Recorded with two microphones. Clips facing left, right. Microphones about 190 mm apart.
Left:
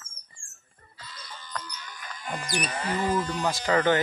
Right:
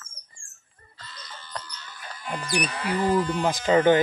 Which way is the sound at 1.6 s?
15° left (ahead or behind).